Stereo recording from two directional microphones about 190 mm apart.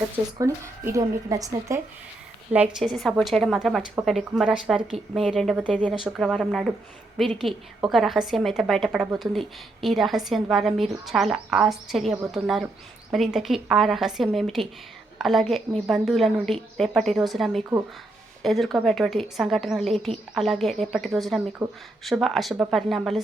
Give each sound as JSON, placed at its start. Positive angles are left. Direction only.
{"t": 0.3, "sound": "a woman's voice", "side_deg": -15}
{"t": 2.5, "sound": "a woman's voice", "side_deg": -5}